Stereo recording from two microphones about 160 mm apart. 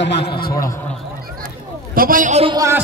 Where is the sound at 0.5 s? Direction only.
20° left (ahead or behind).